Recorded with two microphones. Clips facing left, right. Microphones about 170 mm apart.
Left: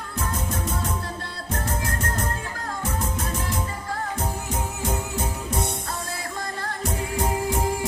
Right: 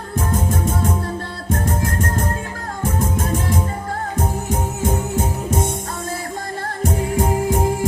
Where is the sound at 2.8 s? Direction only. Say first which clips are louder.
Right 8 dB; 50° right (ahead or behind).